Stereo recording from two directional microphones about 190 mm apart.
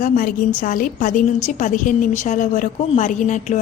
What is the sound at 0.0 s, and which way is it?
A woman's voice, 45° left (ahead or behind).